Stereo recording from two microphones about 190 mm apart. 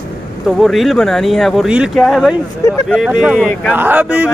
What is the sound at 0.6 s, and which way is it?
Speech, centre (ahead or behind).